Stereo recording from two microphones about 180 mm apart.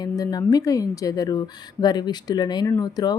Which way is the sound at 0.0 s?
20° left (ahead or behind).